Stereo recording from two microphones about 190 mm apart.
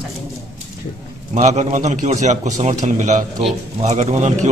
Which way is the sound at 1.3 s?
40° right (ahead or behind).